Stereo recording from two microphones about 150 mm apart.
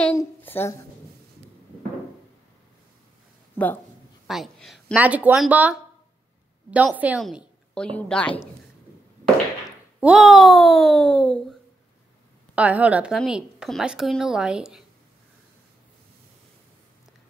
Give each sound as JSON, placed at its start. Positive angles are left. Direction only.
{"t": 0.1, "sound": "a woman's voice", "side_deg": 15}
{"t": 3.5, "sound": "speech", "side_deg": 10}
{"t": 4.3, "sound": "speech", "side_deg": 0}
{"t": 4.9, "sound": "a woman's voice", "side_deg": -10}
{"t": 9.9, "sound": "a woman's voice", "side_deg": -5}
{"t": 12.5, "sound": "a woman's voice", "side_deg": -10}